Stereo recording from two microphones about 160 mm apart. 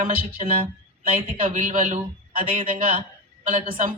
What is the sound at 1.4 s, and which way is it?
A woman's voice, 50° right (ahead or behind).